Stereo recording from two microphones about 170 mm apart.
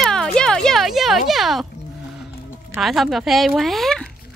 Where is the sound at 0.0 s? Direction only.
5° left (ahead or behind).